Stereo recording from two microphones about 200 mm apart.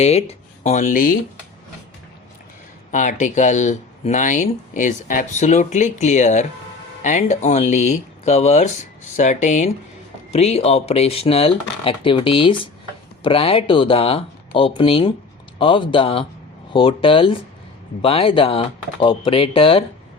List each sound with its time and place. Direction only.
0.0 s speech: 30° left (ahead or behind)
2.9 s speech: 40° left (ahead or behind)